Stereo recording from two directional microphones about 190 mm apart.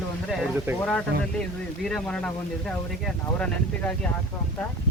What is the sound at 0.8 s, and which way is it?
Speech, 5° left (ahead or behind).